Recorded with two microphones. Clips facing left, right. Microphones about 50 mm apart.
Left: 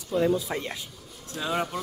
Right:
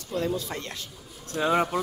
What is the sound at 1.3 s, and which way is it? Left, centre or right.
Speech, right.